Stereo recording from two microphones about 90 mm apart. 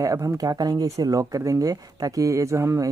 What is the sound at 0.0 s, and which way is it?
Speech, 40° right (ahead or behind).